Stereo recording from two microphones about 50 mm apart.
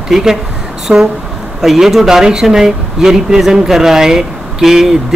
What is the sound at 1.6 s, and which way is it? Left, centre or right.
A man's voice, centre.